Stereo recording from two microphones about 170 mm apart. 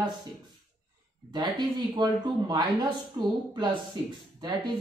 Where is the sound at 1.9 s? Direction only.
25° right (ahead or behind).